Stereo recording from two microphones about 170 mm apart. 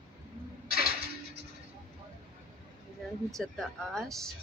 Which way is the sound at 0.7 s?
60° left (ahead or behind).